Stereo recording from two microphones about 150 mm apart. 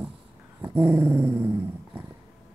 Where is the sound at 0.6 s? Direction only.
10° right (ahead or behind).